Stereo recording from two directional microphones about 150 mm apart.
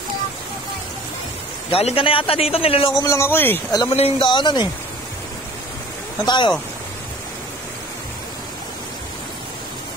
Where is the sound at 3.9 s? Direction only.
35° left (ahead or behind).